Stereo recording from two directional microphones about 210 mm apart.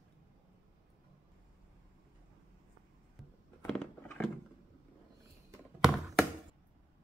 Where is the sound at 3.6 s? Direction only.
10° left (ahead or behind).